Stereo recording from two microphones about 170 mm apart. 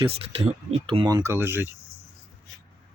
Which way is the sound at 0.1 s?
35° right (ahead or behind).